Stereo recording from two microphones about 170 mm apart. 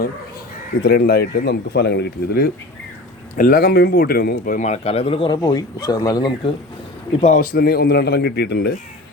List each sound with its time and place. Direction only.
0.9 s speech: 70° left (ahead or behind)
3.3 s speech: 60° left (ahead or behind); by 5.4 s 30° left (ahead or behind)
5.4 s speech: 20° left (ahead or behind)
7.2 s speech: 50° left (ahead or behind); by 8.7 s 75° left (ahead or behind)